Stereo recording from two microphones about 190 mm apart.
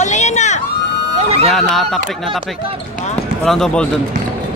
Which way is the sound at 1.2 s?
30° right (ahead or behind).